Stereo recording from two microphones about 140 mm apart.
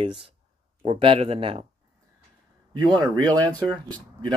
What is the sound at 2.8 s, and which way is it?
Speech, 25° right (ahead or behind).